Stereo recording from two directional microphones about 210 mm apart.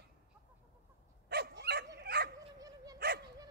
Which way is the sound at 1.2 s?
50° right (ahead or behind).